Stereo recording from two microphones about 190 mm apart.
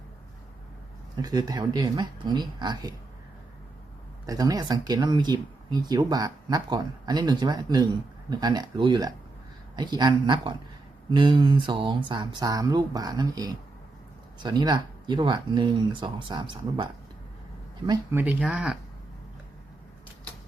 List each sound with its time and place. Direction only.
1.1 s speech: 20° right (ahead or behind)
4.3 s speech: 20° right (ahead or behind)